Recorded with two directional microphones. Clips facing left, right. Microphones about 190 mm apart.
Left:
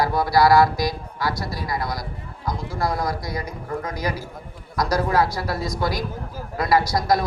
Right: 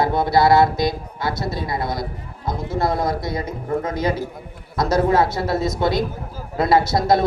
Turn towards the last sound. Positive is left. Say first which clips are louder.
# right 3 dB
turn(degrees=-25)  # may be behind; listen again after turning